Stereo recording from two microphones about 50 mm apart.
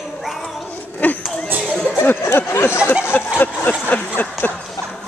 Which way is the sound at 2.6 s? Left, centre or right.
Left.